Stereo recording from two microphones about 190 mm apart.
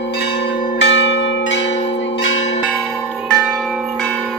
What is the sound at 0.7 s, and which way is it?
Church bell, 70° left (ahead or behind).